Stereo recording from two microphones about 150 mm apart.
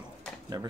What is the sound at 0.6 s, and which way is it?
Speech, 15° right (ahead or behind).